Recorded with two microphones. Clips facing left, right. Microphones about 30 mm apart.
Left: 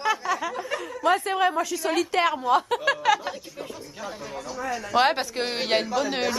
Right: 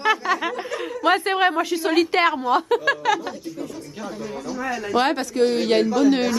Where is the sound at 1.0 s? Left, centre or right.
Right.